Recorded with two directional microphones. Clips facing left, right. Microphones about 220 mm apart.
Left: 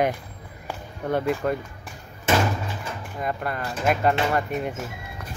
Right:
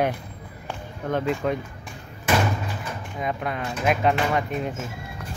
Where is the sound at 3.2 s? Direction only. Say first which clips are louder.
Even; centre (ahead or behind).